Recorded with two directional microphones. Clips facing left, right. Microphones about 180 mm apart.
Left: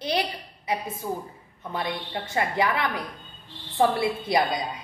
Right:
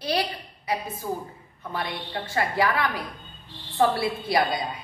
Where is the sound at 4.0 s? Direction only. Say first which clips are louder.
Even; 20° left (ahead or behind).